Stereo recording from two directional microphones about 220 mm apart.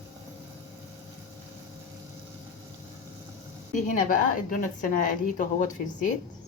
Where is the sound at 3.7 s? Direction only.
35° left (ahead or behind).